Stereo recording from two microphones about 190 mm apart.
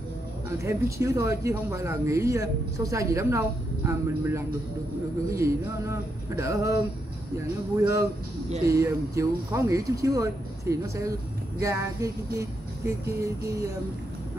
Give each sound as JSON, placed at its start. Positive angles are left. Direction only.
{"t": 0.7, "sound": "speech", "side_deg": -15}